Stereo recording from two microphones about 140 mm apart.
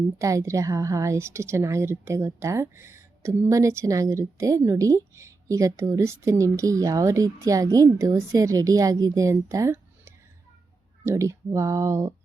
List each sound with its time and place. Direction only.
0.2 s a woman's voice: 20° right (ahead or behind)